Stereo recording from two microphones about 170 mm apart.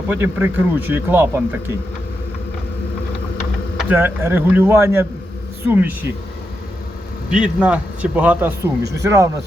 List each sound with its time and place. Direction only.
0.1 s speech: 10° right (ahead or behind)
3.8 s speech: 10° right (ahead or behind)
7.3 s speech: 5° right (ahead or behind)